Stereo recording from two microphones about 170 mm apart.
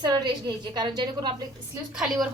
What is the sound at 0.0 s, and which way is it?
A woman's voice, 25° right (ahead or behind).